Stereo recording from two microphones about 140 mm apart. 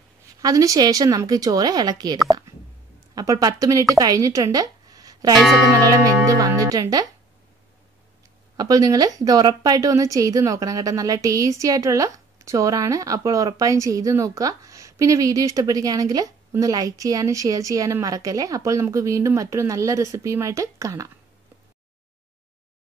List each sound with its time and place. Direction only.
0.4 s a woman's voice: 25° right (ahead or behind)
3.2 s speech: 25° right (ahead or behind)
5.3 s music: centre (ahead or behind)
5.7 s a woman's voice: 25° right (ahead or behind)
8.5 s a woman's voice: 25° right (ahead or behind)